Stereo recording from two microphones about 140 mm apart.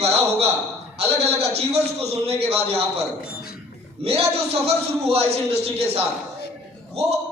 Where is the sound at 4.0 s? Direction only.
45° right (ahead or behind).